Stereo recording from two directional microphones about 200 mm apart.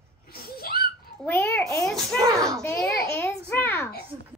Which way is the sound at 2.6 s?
10° left (ahead or behind).